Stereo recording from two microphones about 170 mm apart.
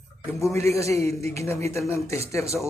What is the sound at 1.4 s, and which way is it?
Speech, 15° left (ahead or behind).